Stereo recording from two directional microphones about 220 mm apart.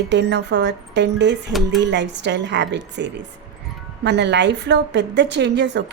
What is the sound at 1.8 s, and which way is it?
Speech, 55° right (ahead or behind).